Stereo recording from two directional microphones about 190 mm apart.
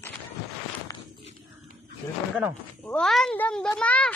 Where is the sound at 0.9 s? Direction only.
20° left (ahead or behind).